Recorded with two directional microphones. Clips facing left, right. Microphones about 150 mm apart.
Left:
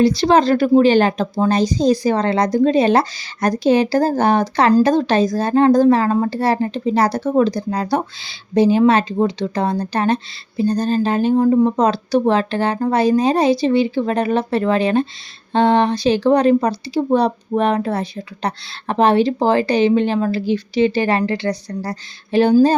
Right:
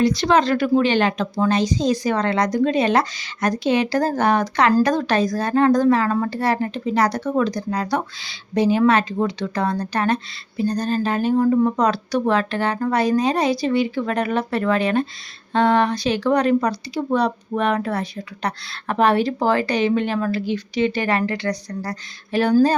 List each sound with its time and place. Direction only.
0.0 s speech: 30° left (ahead or behind)